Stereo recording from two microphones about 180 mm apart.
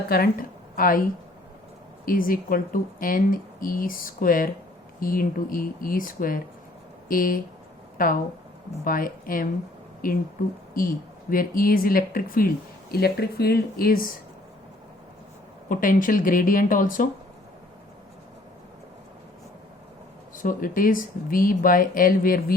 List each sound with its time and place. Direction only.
0.1 s speech: 55° left (ahead or behind)
2.0 s speech: 50° left (ahead or behind)
10.8 s speech: 50° left (ahead or behind)
15.7 s speech: 50° left (ahead or behind)
20.3 s speech: 50° left (ahead or behind)